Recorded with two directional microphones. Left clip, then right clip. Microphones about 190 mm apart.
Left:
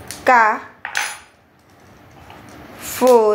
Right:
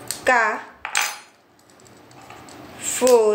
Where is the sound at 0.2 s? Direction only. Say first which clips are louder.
Left 5 dB; 35° left (ahead or behind).